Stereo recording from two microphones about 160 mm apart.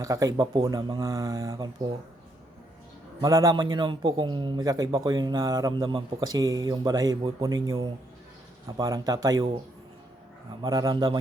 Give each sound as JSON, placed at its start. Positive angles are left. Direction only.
{"t": 0.0, "sound": "a man's voice", "side_deg": -20}
{"t": 3.2, "sound": "a man's voice", "side_deg": -20}
{"t": 10.6, "sound": "a man's voice", "side_deg": -20}